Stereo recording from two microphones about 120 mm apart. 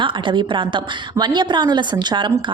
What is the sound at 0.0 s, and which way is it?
A woman's voice, 40° right (ahead or behind).